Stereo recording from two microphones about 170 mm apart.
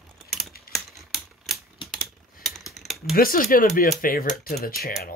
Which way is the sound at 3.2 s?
55° left (ahead or behind).